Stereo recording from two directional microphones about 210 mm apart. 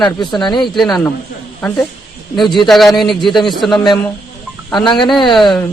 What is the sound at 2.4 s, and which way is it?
Speech, centre (ahead or behind).